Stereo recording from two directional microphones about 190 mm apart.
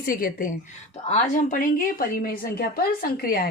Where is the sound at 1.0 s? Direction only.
40° left (ahead or behind).